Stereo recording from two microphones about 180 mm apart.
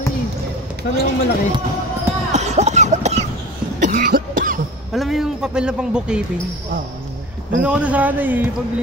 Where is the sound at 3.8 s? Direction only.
45° right (ahead or behind).